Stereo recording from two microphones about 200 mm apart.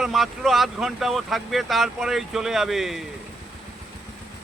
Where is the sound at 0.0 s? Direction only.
Centre (ahead or behind).